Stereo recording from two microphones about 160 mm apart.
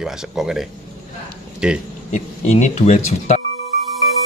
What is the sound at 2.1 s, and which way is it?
Speech, 50° left (ahead or behind).